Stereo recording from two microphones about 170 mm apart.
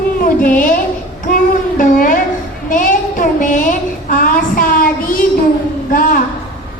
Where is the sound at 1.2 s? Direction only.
50° left (ahead or behind).